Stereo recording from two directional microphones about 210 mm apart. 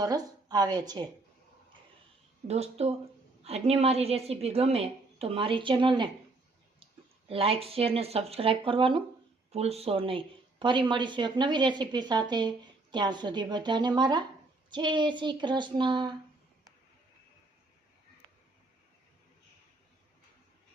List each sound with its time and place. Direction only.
0.0 s a woman's voice: 15° right (ahead or behind)
2.5 s a woman's voice: 30° right (ahead or behind)
7.3 s a woman's voice: 25° right (ahead or behind)